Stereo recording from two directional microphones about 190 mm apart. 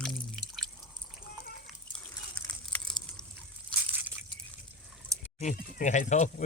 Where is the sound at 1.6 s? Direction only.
5° left (ahead or behind).